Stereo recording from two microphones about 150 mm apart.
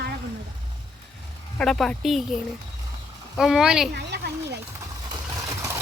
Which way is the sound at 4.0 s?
90° right.